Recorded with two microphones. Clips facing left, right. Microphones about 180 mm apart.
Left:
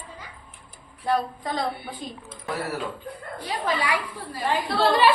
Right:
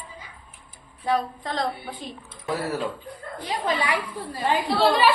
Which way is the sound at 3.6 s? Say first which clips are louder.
Even; 20° right (ahead or behind).